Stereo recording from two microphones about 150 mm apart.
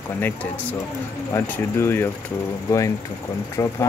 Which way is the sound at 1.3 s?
15° left (ahead or behind).